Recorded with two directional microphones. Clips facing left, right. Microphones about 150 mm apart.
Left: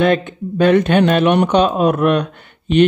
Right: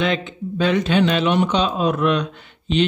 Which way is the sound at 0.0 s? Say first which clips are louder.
Left 7 dB; 55° left (ahead or behind).